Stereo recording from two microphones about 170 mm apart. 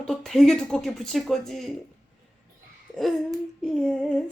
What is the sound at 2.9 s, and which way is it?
Speech, centre (ahead or behind).